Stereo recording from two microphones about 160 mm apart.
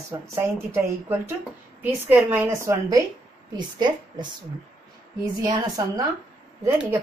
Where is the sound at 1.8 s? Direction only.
10° right (ahead or behind); by 4.3 s 30° right (ahead or behind).